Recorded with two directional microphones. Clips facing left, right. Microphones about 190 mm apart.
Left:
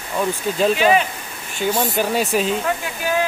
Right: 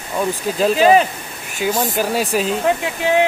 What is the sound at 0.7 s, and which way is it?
Speech, 35° right (ahead or behind).